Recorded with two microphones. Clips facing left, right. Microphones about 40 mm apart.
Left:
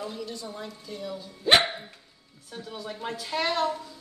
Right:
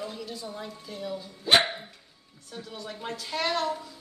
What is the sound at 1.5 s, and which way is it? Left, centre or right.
Speech, left.